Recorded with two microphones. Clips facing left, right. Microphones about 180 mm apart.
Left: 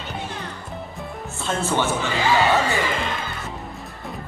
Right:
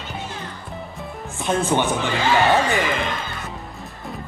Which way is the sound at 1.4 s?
15° right (ahead or behind).